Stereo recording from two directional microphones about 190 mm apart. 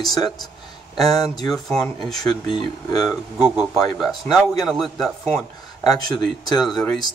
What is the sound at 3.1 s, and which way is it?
A man's voice, 10° right (ahead or behind).